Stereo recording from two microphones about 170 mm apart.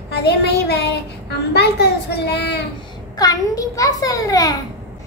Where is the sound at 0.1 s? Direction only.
75° left (ahead or behind).